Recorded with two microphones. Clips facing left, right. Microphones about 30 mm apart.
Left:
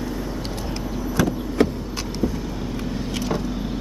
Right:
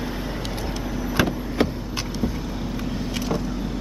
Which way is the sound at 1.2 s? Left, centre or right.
Right.